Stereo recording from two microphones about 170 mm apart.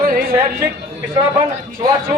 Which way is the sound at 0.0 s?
60° right (ahead or behind).